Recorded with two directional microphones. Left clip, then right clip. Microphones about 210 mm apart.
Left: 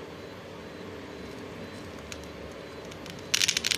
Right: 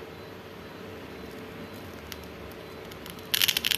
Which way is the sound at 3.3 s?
15° right (ahead or behind).